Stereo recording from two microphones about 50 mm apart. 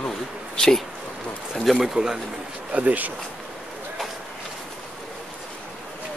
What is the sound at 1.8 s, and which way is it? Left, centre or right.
Speech, centre.